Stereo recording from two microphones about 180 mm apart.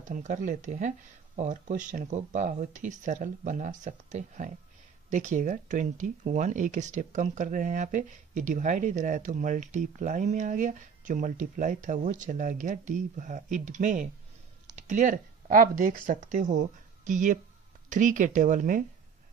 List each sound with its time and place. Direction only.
0.1 s speech: 45° right (ahead or behind)